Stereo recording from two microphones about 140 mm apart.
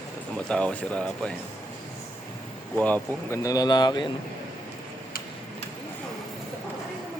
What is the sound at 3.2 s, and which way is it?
Speech, 20° left (ahead or behind).